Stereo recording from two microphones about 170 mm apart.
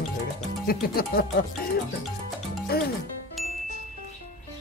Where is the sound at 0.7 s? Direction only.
60° left (ahead or behind).